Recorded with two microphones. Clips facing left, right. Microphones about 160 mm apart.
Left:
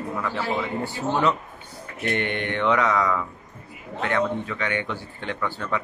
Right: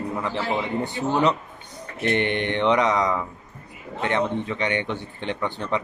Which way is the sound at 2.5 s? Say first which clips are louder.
Right 1 dB; 25° right (ahead or behind).